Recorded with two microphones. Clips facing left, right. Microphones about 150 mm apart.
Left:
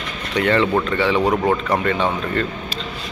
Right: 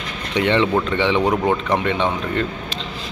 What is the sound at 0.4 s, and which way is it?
Speech, 20° right (ahead or behind).